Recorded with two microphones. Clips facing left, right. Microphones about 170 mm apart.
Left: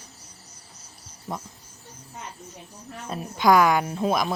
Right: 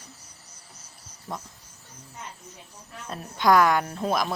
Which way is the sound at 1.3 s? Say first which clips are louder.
Left 2 dB; 5° left (ahead or behind).